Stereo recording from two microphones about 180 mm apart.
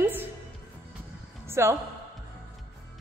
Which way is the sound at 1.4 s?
15° right (ahead or behind).